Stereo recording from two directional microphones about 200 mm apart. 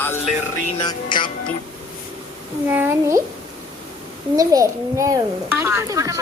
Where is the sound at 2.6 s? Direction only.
10° right (ahead or behind).